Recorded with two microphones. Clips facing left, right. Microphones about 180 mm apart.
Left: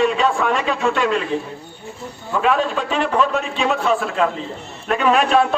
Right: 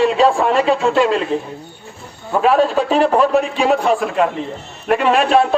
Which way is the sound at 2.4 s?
35° right (ahead or behind).